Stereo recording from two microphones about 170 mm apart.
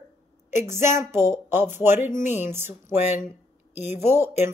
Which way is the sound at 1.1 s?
15° right (ahead or behind).